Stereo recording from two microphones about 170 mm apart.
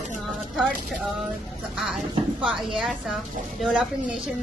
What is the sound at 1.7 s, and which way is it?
Speech, centre (ahead or behind).